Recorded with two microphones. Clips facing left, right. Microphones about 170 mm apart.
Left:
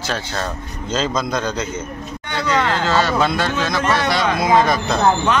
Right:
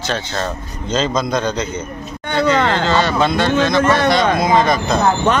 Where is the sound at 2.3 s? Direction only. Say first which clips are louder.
Right 4 dB; 55° right (ahead or behind).